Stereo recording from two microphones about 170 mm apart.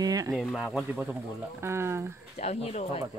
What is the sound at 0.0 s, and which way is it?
Speech, 20° right (ahead or behind).